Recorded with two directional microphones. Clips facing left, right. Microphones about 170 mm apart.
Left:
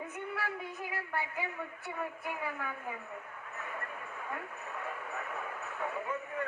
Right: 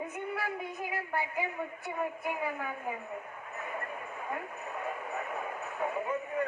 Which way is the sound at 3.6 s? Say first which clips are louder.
Right 4 dB; 15° right (ahead or behind).